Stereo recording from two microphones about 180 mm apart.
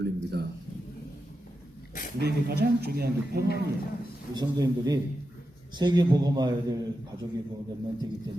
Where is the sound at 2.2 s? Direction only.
65° right (ahead or behind).